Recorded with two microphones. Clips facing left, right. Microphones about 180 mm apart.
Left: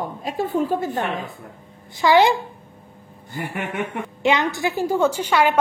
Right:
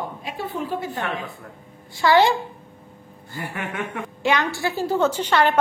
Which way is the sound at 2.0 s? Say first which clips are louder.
Left 1 dB; 15° left (ahead or behind).